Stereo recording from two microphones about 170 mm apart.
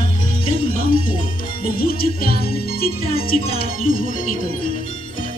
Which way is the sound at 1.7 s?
60° left (ahead or behind).